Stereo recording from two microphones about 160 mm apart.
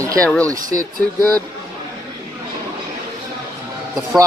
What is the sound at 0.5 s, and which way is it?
Speech, 55° right (ahead or behind).